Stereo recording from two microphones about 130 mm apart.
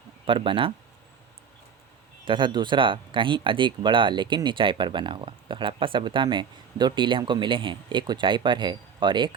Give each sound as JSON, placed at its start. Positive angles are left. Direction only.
{"t": 0.3, "sound": "speech", "side_deg": -40}
{"t": 2.2, "sound": "speech", "side_deg": -40}